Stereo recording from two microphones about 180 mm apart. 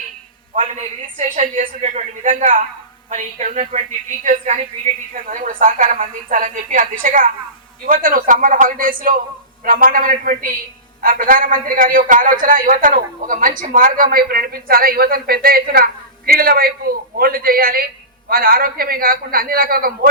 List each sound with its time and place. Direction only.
0.5 s a man's voice: 45° right (ahead or behind)